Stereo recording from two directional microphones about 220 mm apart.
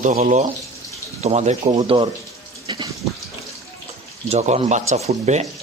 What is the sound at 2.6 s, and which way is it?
Water tap, 20° right (ahead or behind).